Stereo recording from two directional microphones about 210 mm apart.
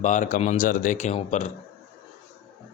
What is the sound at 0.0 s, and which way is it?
Speech, 35° left (ahead or behind).